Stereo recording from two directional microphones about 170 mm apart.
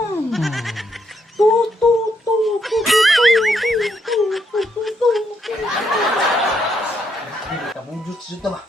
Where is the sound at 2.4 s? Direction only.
Centre (ahead or behind).